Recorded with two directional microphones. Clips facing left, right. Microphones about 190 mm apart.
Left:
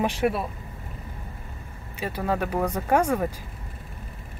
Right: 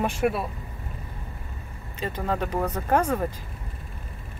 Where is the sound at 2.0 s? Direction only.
10° left (ahead or behind).